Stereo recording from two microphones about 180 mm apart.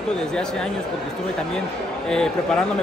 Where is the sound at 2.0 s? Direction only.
5° left (ahead or behind).